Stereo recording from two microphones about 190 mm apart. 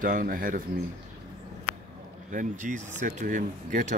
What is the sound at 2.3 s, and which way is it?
Speech, 40° right (ahead or behind).